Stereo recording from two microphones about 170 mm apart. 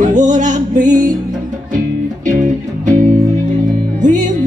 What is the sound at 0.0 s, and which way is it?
Music, 45° right (ahead or behind).